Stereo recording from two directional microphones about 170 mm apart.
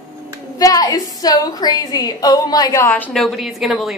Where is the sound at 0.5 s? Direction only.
20° left (ahead or behind).